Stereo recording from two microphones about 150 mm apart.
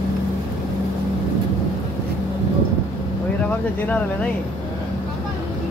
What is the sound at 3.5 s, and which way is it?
Speech, 10° left (ahead or behind).